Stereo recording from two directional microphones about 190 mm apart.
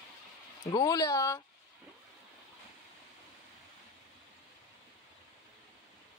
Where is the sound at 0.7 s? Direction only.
20° left (ahead or behind).